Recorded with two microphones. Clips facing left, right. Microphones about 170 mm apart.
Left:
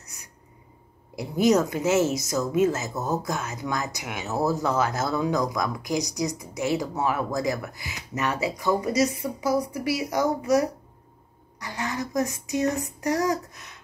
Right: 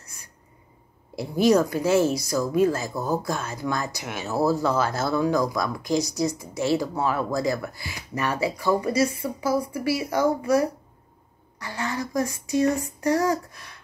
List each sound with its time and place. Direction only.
0.0 s a sound: 15° left (ahead or behind)
1.1 s speech: 15° left (ahead or behind)
11.6 s speech: 20° left (ahead or behind)